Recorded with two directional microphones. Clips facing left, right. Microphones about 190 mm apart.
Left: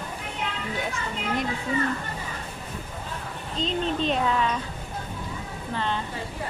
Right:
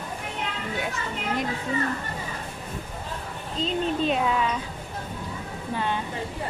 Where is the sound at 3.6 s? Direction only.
5° right (ahead or behind).